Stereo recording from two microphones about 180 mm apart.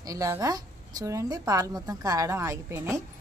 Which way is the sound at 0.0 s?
20° right (ahead or behind).